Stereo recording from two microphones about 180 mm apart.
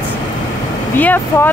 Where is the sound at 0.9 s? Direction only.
10° left (ahead or behind).